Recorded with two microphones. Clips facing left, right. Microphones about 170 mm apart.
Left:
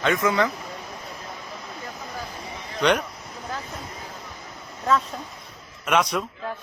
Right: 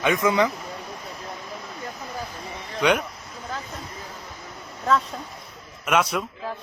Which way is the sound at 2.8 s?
5° right (ahead or behind).